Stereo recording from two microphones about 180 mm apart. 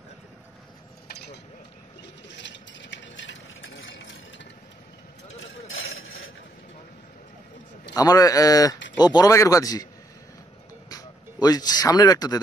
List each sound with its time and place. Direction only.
2.2 s stir: 80° left
5.3 s a sound: 90° left
7.9 s a man's voice: 20° left (ahead or behind)
10.9 s speech: 20° left (ahead or behind)